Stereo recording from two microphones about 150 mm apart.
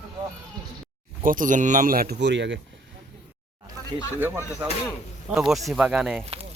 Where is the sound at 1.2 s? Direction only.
60° right (ahead or behind).